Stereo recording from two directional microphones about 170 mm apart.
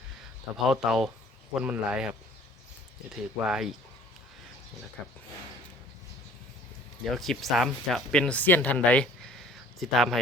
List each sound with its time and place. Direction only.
0.5 s speech: centre (ahead or behind)
7.0 s speech: centre (ahead or behind)